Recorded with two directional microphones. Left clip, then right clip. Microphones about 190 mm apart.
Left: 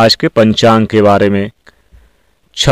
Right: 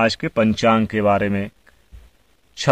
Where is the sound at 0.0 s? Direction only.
40° left (ahead or behind).